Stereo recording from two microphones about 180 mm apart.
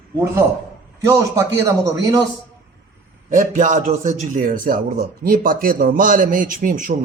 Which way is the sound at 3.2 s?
45° right (ahead or behind).